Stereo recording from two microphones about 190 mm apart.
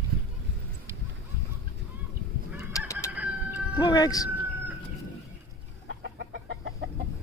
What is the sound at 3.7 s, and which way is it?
Speech, 20° left (ahead or behind).